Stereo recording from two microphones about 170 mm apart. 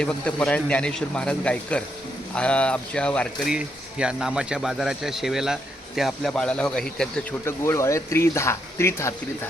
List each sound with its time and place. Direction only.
0.0 s speech: 5° left (ahead or behind)
3.5 s speech: 5° right (ahead or behind)
7.4 s speech: 15° left (ahead or behind)